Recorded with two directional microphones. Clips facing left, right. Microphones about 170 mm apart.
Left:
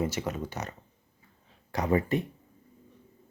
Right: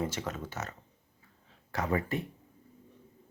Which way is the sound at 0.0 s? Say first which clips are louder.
Left 4 dB; 10° left (ahead or behind).